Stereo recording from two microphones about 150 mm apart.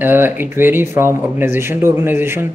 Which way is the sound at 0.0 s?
15° right (ahead or behind).